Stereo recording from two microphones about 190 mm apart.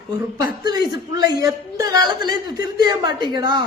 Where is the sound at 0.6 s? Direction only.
20° right (ahead or behind).